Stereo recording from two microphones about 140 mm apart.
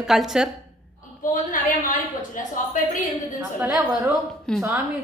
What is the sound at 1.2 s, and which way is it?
A woman's voice, 70° left (ahead or behind).